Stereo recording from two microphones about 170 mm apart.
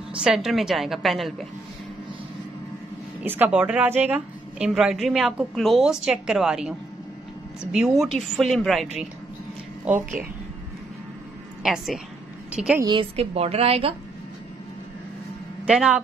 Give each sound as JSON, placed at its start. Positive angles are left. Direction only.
{"t": 0.1, "sound": "a woman's voice", "side_deg": -5}
{"t": 3.2, "sound": "a woman's voice", "side_deg": -10}
{"t": 7.7, "sound": "a woman's voice", "side_deg": 0}
{"t": 9.8, "sound": "speech", "side_deg": -10}
{"t": 11.6, "sound": "a woman's voice", "side_deg": 0}
{"t": 12.8, "sound": "a woman's voice", "side_deg": -30}
{"t": 15.6, "sound": "speech", "side_deg": -5}